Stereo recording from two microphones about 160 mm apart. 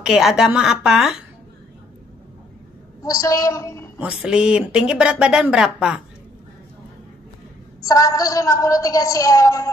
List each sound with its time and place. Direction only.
0.0 s speech: 5° right (ahead or behind)
3.0 s a woman's voice: 20° left (ahead or behind)
4.0 s speech: 5° right (ahead or behind)
7.9 s a woman's voice: 20° left (ahead or behind)